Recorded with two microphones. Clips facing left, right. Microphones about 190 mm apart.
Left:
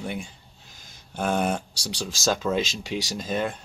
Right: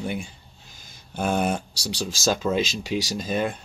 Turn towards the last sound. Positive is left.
turn(degrees=-10)  # may be behind; listen again after turning